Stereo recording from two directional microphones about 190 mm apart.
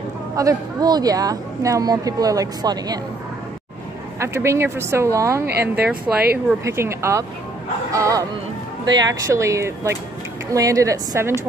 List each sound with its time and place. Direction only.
0.4 s a woman's voice: 20° right (ahead or behind)
4.2 s speech: 15° right (ahead or behind)
5.5 s speech: 55° right (ahead or behind)
6.3 s speech: 15° right (ahead or behind)